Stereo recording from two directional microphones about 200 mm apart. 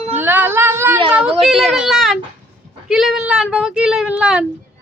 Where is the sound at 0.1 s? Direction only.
10° right (ahead or behind).